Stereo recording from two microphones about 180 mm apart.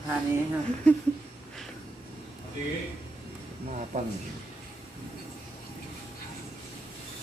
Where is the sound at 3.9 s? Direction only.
40° right (ahead or behind).